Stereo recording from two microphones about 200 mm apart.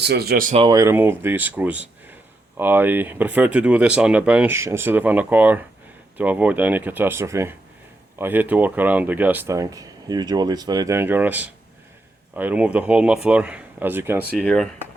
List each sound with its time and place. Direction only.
0.0 s speech: 55° right (ahead or behind)
0.5 s speech: 20° right (ahead or behind)
14.4 s speech: 5° left (ahead or behind)